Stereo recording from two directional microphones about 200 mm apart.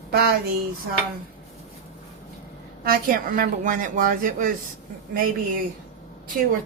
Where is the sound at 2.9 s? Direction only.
45° right (ahead or behind).